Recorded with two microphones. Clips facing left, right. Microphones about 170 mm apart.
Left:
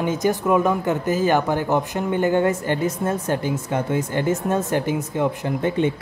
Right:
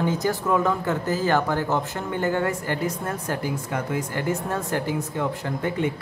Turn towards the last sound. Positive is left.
turn(degrees=20)  # may be behind; listen again after turning